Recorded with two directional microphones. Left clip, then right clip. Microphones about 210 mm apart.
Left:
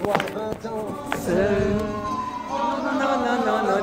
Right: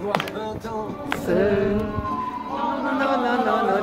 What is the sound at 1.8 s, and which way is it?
Music, 45° left (ahead or behind).